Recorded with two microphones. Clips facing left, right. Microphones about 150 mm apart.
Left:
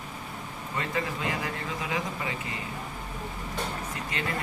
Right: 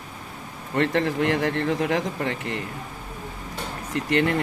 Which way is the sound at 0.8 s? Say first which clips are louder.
Right 10 dB; 65° right (ahead or behind).